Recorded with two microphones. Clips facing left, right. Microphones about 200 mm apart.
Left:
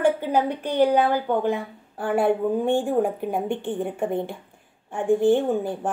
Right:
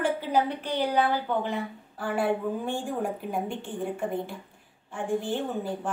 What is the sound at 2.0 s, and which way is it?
Speech, 55° left (ahead or behind).